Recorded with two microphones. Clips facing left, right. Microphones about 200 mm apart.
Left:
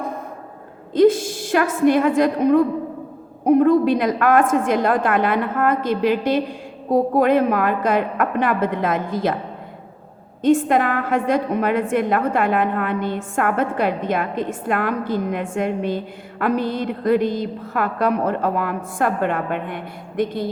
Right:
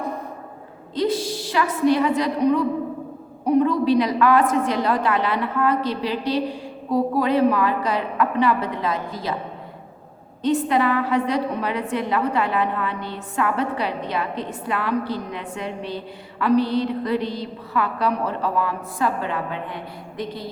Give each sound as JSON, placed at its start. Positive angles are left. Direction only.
{"t": 0.9, "sound": "a woman's voice", "side_deg": 50}
{"t": 10.4, "sound": "a woman's voice", "side_deg": 50}